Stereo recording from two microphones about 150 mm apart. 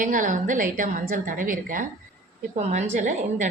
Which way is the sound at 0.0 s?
60° right (ahead or behind).